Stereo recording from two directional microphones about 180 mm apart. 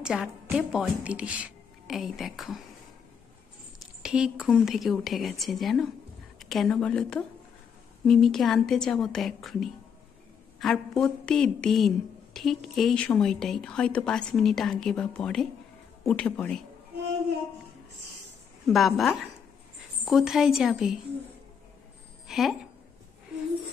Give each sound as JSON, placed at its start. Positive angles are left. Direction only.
{"t": 0.0, "sound": "a woman's voice", "side_deg": -5}
{"t": 4.0, "sound": "a woman's voice", "side_deg": -5}
{"t": 18.7, "sound": "a woman's voice", "side_deg": 0}
{"t": 22.3, "sound": "speech", "side_deg": 0}